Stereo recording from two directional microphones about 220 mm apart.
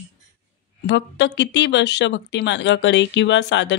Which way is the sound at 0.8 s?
55° left (ahead or behind).